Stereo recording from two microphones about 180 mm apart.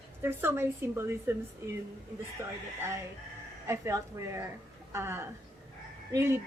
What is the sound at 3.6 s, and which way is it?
A woman's voice, 15° right (ahead or behind).